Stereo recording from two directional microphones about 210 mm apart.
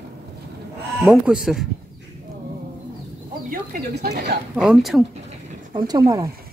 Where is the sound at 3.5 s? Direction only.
45° right (ahead or behind).